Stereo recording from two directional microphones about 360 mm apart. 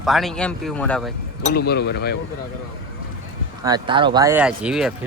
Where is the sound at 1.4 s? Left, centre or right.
Left.